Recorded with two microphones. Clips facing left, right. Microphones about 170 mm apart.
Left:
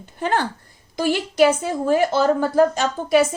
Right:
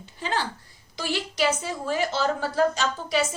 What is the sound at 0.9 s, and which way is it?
A woman's voice, 50° left (ahead or behind).